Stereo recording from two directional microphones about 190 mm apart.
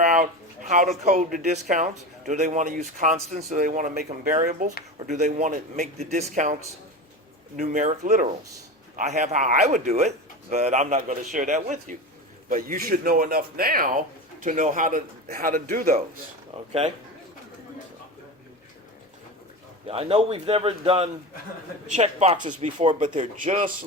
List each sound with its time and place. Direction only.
0.0 s speech: 40° right (ahead or behind)
16.5 s speech: 30° right (ahead or behind)
19.9 s speech: 30° right (ahead or behind)